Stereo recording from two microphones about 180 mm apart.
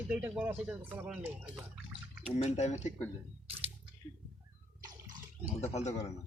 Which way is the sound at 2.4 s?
40° left (ahead or behind).